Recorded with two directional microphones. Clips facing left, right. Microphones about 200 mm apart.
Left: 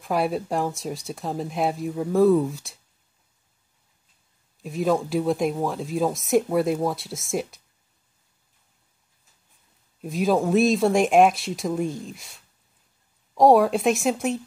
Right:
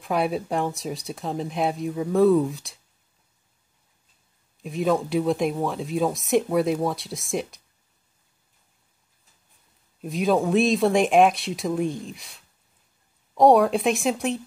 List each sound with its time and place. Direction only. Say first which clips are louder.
0.0 s speech: even; centre (ahead or behind)
4.6 s speech: even; centre (ahead or behind)
10.0 s speech: even; centre (ahead or behind)